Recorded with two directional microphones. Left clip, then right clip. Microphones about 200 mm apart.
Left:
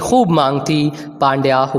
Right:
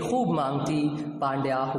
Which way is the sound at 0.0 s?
35° left (ahead or behind).